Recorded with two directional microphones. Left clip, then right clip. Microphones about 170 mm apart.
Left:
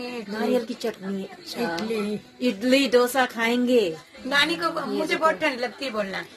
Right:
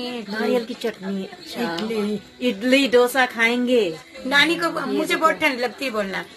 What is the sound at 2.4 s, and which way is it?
A woman's voice, 10° left (ahead or behind).